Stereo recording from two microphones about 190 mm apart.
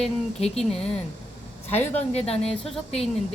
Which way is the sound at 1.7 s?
35° left (ahead or behind).